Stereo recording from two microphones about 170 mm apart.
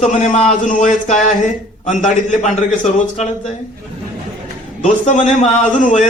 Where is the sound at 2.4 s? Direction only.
45° left (ahead or behind).